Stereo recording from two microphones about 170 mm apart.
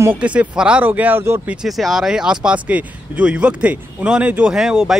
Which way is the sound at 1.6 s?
Centre (ahead or behind).